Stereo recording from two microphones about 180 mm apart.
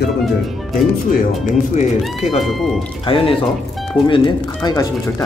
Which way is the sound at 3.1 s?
30° left (ahead or behind).